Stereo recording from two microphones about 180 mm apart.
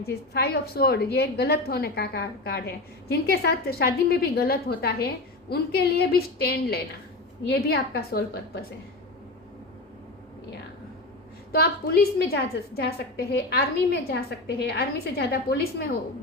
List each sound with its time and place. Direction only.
0.0 s a woman's voice: 60° left (ahead or behind)
11.5 s a woman's voice: 60° left (ahead or behind)